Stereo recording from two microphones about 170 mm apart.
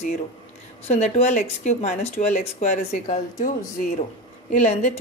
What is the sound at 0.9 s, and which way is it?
Speech, 40° left (ahead or behind).